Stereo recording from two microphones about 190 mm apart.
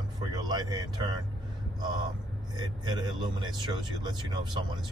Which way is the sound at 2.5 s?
20° right (ahead or behind).